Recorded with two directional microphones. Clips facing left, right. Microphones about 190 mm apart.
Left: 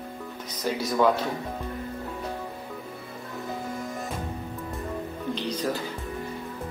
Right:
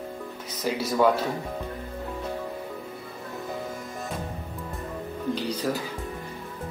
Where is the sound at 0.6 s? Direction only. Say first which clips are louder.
Right 1 dB; 5° right (ahead or behind).